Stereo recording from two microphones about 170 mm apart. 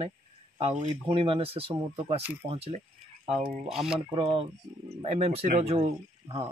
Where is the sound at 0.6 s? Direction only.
35° right (ahead or behind).